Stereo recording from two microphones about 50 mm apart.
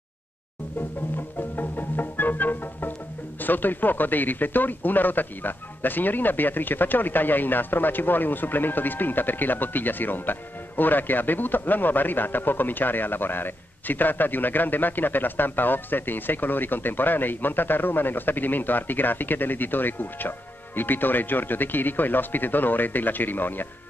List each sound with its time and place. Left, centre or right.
1.6 s music: left
3.3 s a man's voice: left